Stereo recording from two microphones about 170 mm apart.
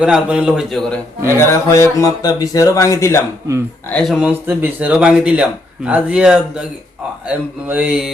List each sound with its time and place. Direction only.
0.0 s a man's voice: 5° right (ahead or behind)
1.4 s speech: 15° left (ahead or behind)
3.8 s speech: 5° left (ahead or behind)